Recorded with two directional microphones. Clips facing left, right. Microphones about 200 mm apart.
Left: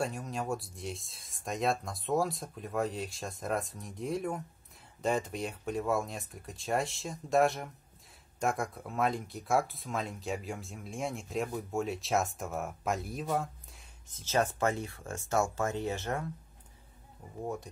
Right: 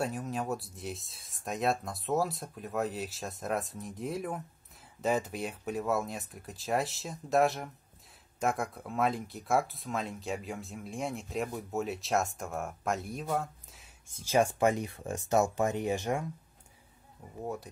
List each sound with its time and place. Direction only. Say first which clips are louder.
0.0 s speech: right 1 dB; centre (ahead or behind)
14.0 s speech: right 3 dB; 10° right (ahead or behind)